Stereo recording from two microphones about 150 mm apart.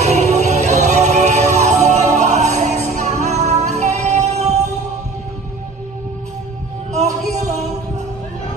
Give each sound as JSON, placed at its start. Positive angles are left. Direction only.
{"t": 0.0, "sound": "music", "side_deg": -45}
{"t": 7.3, "sound": "music", "side_deg": -50}